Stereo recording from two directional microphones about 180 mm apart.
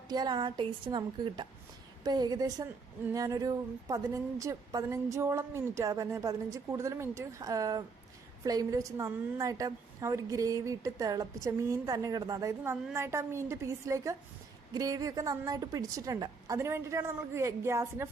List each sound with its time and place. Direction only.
0.1 s a woman's voice: 20° right (ahead or behind)